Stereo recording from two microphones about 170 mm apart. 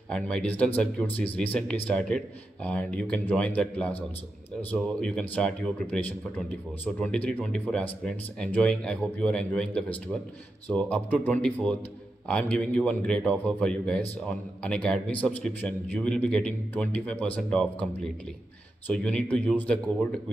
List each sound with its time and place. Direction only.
0.1 s a man's voice: 5° left (ahead or behind)
18.9 s speech: 5° left (ahead or behind)